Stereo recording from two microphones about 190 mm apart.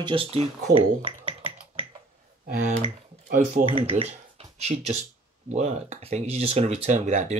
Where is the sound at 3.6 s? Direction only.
30° right (ahead or behind).